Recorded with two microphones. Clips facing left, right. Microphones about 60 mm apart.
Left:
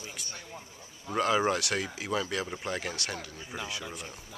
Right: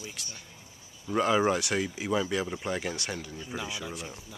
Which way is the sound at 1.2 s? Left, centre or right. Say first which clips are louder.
Right 1 dB; centre.